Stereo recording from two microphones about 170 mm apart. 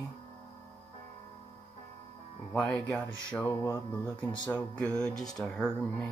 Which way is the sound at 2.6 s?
5° left (ahead or behind).